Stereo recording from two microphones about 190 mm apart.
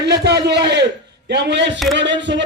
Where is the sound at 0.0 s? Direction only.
60° right (ahead or behind).